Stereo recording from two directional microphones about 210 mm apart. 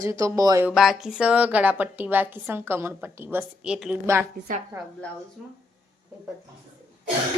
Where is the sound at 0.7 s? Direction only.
Centre (ahead or behind).